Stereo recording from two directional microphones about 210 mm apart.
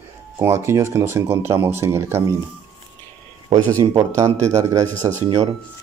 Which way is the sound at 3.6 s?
15° right (ahead or behind).